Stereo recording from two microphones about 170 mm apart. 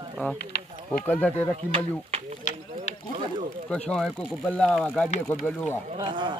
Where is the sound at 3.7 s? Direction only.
5° left (ahead or behind).